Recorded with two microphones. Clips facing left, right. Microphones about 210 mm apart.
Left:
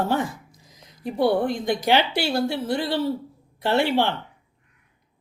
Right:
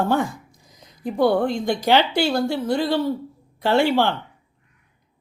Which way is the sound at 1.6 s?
5° left (ahead or behind).